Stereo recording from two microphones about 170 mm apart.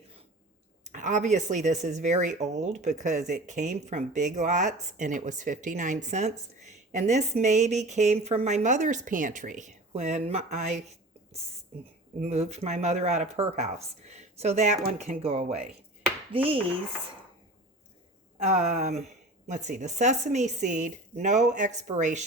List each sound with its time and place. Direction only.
0.9 s speech: 45° right (ahead or behind)
12.2 s speech: 40° right (ahead or behind)
18.4 s speech: 40° right (ahead or behind)